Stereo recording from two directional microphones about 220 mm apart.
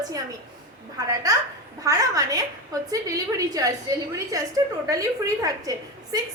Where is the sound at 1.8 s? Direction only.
15° right (ahead or behind).